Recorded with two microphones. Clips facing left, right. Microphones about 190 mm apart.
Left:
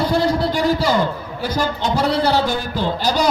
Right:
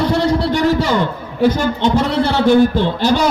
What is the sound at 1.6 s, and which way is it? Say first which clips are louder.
A man's voice: right 4 dB; 35° left (ahead or behind).